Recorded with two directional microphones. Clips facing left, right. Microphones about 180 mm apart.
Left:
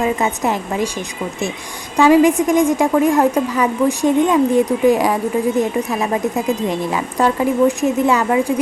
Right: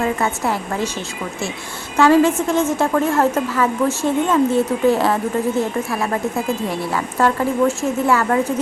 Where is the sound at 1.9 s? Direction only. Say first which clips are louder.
Left 2 dB; 15° left (ahead or behind).